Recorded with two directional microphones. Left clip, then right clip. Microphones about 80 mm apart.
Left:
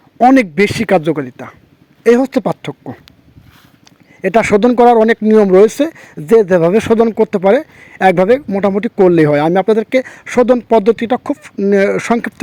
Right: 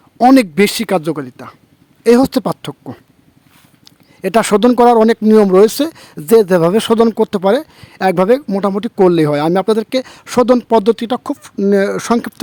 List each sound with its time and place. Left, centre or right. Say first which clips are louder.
0.2 s speech: even; right
0.8 s speech: left 4 dB; centre
2.0 s speech: even; right
4.2 s speech: left 1 dB; right